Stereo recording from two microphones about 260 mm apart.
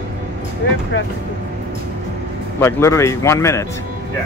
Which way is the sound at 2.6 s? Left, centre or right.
Centre.